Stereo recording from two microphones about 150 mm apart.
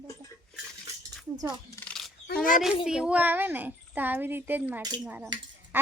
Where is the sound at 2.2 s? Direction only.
80° left.